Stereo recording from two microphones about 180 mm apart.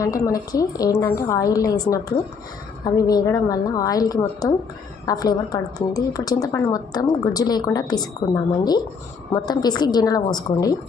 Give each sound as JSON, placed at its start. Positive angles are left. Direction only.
{"t": 0.0, "sound": "a woman's voice", "side_deg": 20}